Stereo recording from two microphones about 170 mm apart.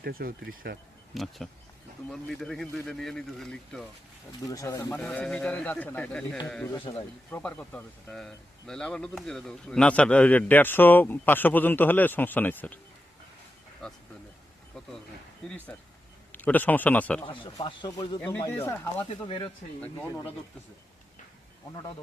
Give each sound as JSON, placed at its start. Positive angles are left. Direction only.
{"t": 0.0, "sound": "speech", "side_deg": -60}
{"t": 1.1, "sound": "speech", "side_deg": 0}
{"t": 4.4, "sound": "speech", "side_deg": 20}
{"t": 4.9, "sound": "speech", "side_deg": 5}
{"t": 6.9, "sound": "a man's voice", "side_deg": 25}
{"t": 7.3, "sound": "speech", "side_deg": 10}
{"t": 13.8, "sound": "speech", "side_deg": 5}
{"t": 15.4, "sound": "speech", "side_deg": 10}
{"t": 17.2, "sound": "a man's voice", "side_deg": 30}